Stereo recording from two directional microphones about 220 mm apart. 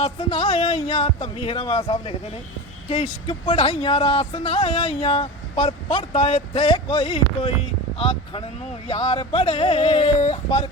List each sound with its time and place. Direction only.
0.0 s speech: 25° left (ahead or behind)